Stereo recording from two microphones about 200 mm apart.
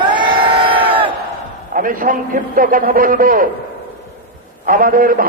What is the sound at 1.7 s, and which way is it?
A man's voice, 45° right (ahead or behind).